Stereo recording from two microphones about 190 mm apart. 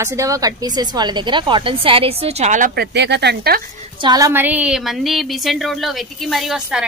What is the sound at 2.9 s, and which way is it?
Speech, 60° right (ahead or behind).